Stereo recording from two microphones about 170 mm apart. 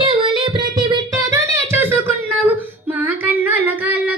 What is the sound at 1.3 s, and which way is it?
Music, 15° right (ahead or behind).